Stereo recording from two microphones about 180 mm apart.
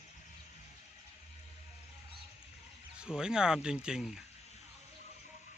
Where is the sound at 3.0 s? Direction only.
5° right (ahead or behind).